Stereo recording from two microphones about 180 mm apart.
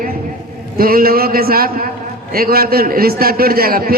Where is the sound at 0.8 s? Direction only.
55° right (ahead or behind).